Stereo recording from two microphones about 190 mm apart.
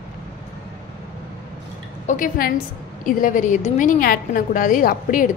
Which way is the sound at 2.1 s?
45° left (ahead or behind).